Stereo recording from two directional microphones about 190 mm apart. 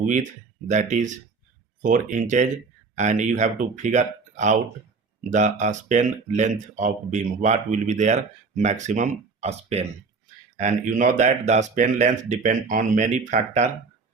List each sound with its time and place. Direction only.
0.0 s speech: 40° right (ahead or behind)